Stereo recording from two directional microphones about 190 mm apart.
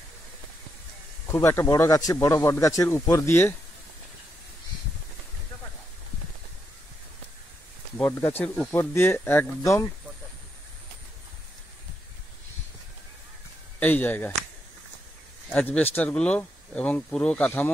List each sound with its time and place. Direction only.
1.2 s speech: 15° left (ahead or behind)
8.0 s speech: 10° left (ahead or behind)
13.7 s speech: 10° left (ahead or behind)
15.5 s speech: 10° left (ahead or behind)